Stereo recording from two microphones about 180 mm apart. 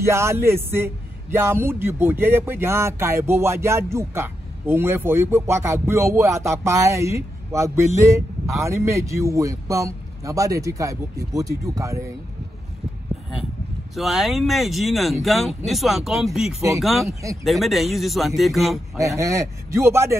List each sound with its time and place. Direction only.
0.0 s speech: 15° right (ahead or behind)
13.9 s speech: centre (ahead or behind)
18.9 s speech: 15° right (ahead or behind)